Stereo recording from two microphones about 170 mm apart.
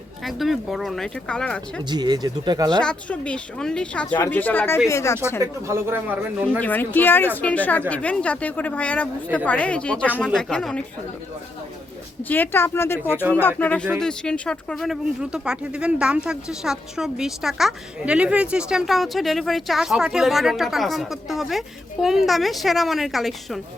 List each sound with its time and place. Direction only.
0.3 s speech: centre (ahead or behind)
1.9 s speech: 25° right (ahead or behind)
2.8 s a woman's voice: 5° left (ahead or behind)
5.4 s speech: 15° right (ahead or behind)
6.6 s a woman's voice: 10° left (ahead or behind)
12.3 s a woman's voice: 10° left (ahead or behind)